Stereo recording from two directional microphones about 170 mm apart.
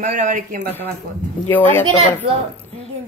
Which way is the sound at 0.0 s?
50° right (ahead or behind).